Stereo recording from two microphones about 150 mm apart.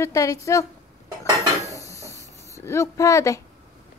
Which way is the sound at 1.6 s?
20° left (ahead or behind).